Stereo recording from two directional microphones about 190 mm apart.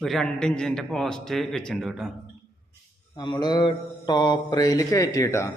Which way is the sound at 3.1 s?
25° left (ahead or behind).